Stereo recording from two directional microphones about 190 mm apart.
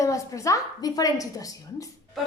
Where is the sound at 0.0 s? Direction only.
15° left (ahead or behind).